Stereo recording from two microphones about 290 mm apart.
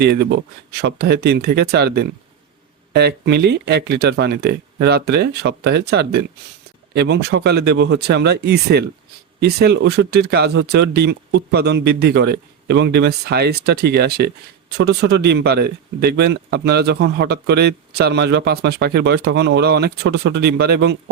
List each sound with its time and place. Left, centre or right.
0.0 s speech: right